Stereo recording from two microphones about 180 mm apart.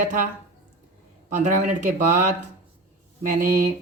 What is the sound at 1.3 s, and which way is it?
Speech, 45° right (ahead or behind).